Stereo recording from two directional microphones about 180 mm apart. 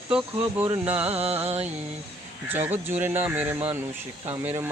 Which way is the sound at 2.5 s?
10° right (ahead or behind).